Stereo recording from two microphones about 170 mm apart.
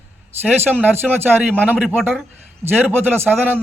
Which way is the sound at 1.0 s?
Centre (ahead or behind).